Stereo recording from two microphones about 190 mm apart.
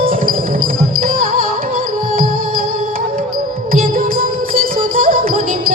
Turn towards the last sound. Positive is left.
turn(degrees=-45)  # may be behind; listen again after turning